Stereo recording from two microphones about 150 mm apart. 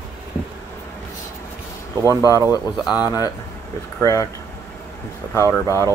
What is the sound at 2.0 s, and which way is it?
Speech, 20° left (ahead or behind).